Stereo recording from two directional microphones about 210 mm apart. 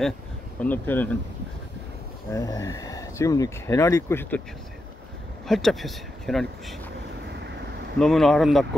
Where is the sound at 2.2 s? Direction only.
15° left (ahead or behind).